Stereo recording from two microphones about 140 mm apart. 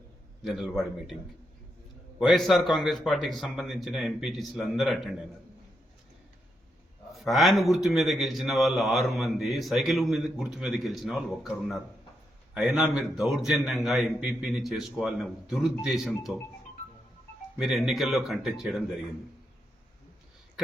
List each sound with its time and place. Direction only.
0.4 s a man's voice: centre (ahead or behind)
2.1 s a man's voice: centre (ahead or behind)
7.1 s a man's voice: centre (ahead or behind)
17.6 s a man's voice: centre (ahead or behind)